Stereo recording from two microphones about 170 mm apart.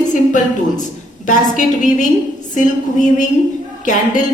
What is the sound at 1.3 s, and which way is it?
A woman's voice, 50° left (ahead or behind).